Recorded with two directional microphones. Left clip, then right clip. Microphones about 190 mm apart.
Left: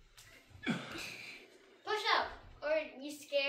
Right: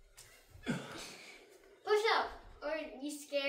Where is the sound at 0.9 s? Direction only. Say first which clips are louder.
Left 4 dB; 25° left (ahead or behind).